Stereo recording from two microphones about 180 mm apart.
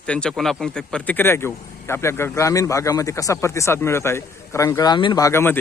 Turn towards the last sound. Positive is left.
turn(degrees=10)  # may be behind; listen again after turning